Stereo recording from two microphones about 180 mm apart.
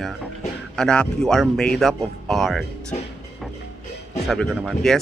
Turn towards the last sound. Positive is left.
turn(degrees=0)  # may be behind; listen again after turning